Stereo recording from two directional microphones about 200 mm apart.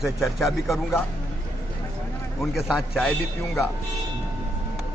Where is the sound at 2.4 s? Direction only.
Centre (ahead or behind).